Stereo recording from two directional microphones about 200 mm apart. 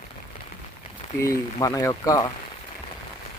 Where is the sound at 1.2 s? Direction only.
15° left (ahead or behind).